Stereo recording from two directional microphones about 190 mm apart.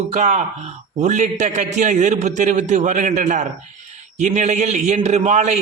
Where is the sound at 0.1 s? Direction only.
40° right (ahead or behind).